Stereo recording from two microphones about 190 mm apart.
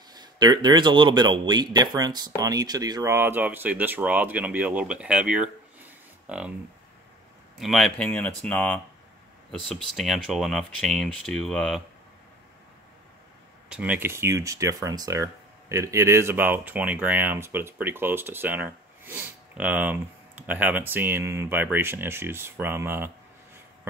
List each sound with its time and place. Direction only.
0.1 s speech: 20° right (ahead or behind); by 6.5 s 5° right (ahead or behind)
7.5 s speech: centre (ahead or behind)
13.7 s speech: 5° right (ahead or behind)